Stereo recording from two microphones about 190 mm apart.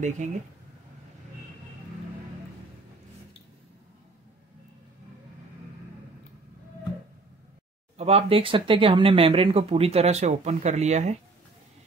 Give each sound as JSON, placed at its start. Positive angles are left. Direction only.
{"t": 0.2, "sound": "speech", "side_deg": -40}
{"t": 8.0, "sound": "speech", "side_deg": -30}